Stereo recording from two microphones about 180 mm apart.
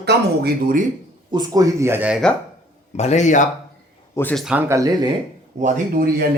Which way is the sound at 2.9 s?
40° left (ahead or behind).